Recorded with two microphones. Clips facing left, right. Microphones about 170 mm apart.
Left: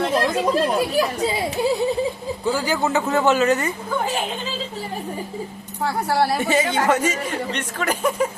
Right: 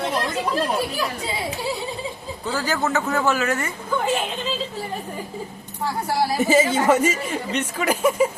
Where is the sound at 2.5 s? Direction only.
10° left (ahead or behind).